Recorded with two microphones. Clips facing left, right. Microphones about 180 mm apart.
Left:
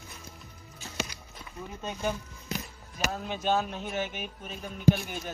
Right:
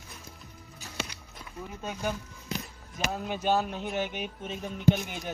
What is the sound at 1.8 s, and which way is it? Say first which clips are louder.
Speech: left 1 dB; 5° right (ahead or behind).